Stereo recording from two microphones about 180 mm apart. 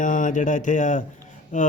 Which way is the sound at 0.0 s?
45° left (ahead or behind).